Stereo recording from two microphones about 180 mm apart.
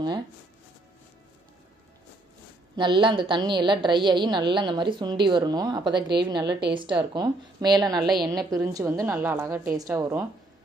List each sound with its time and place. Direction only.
2.7 s a woman's voice: 25° right (ahead or behind)